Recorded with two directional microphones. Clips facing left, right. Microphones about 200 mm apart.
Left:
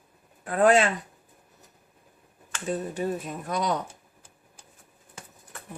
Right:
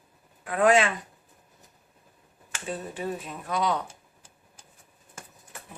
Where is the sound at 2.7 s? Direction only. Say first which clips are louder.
Left 4 dB; 40° left (ahead or behind).